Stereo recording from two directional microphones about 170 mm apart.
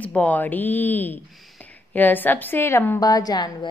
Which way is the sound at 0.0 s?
10° left (ahead or behind).